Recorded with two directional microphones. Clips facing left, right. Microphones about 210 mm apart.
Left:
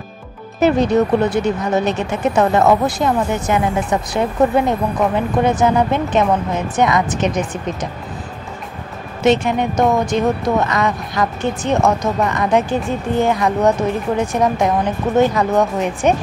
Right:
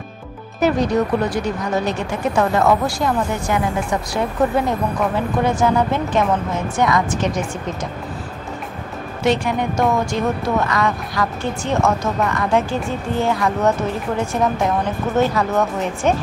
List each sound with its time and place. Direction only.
0.6 s speech: 25° left (ahead or behind)
9.2 s speech: 20° left (ahead or behind)